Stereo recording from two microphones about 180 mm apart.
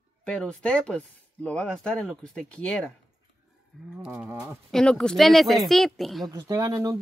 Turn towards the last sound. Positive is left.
turn(degrees=-20)  # may be behind; listen again after turning